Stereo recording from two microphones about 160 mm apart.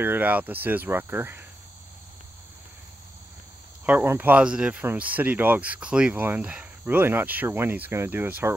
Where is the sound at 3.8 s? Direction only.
10° right (ahead or behind).